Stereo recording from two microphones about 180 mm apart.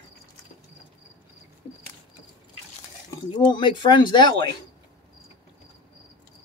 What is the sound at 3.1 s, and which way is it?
Speech, 25° left (ahead or behind).